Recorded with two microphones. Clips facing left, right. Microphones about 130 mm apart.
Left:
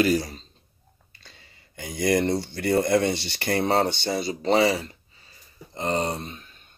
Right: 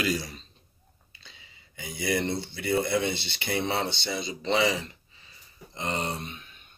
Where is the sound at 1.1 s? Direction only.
50° left (ahead or behind).